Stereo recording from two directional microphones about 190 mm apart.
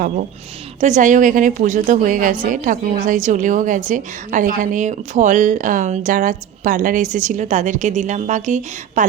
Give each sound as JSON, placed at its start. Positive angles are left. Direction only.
{"t": 0.8, "sound": "a woman's voice", "side_deg": -40}